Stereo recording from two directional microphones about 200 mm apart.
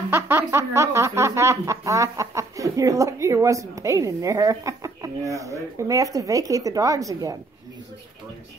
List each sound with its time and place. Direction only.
0.1 s speech: 10° right (ahead or behind)